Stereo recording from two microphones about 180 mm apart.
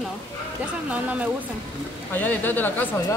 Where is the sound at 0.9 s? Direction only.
10° right (ahead or behind).